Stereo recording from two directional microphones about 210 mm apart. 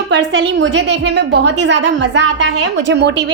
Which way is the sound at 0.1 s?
60° right (ahead or behind).